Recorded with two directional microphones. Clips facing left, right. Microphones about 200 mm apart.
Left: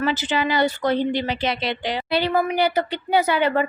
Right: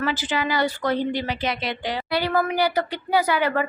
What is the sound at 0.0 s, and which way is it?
Speech, 25° left (ahead or behind).